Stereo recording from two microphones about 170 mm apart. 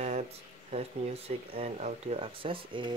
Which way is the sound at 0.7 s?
35° right (ahead or behind).